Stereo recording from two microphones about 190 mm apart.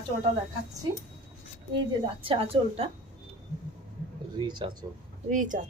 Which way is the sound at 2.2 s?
30° right (ahead or behind).